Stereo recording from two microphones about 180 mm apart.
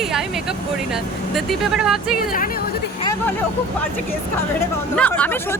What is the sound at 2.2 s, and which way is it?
Speech, 50° left (ahead or behind).